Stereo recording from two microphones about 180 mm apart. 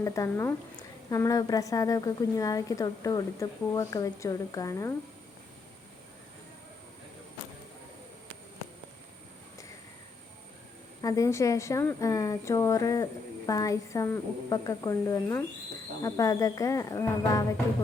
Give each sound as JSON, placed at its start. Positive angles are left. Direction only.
{"t": 0.0, "sound": "a woman's voice", "side_deg": 15}
{"t": 11.0, "sound": "a woman's voice", "side_deg": 20}